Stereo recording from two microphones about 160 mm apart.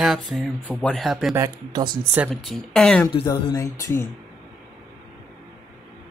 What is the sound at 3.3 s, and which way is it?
Music, 25° left (ahead or behind).